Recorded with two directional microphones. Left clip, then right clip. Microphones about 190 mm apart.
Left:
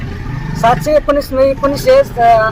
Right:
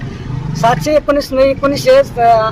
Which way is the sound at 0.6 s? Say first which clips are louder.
Left 1 dB; 5° right (ahead or behind).